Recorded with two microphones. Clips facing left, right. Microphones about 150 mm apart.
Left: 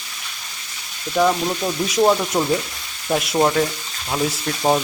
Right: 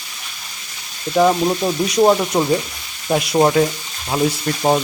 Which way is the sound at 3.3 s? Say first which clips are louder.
Right 4 dB; 10° right (ahead or behind).